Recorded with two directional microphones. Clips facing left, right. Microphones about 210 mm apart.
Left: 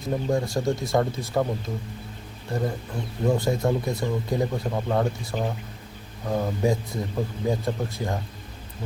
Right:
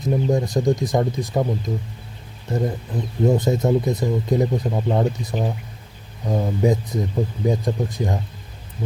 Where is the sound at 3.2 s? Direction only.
20° right (ahead or behind).